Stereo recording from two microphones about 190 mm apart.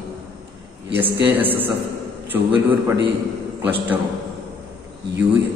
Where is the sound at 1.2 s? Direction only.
10° right (ahead or behind).